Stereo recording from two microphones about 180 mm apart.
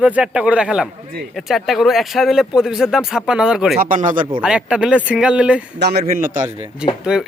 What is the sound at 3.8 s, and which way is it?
Speech, 45° right (ahead or behind).